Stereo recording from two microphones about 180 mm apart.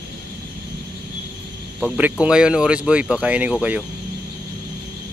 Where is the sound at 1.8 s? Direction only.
5° right (ahead or behind).